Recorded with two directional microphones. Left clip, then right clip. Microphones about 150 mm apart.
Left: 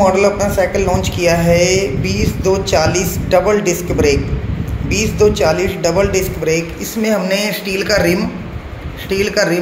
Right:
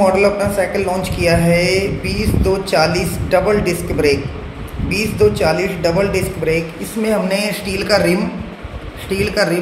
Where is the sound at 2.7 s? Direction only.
15° left (ahead or behind).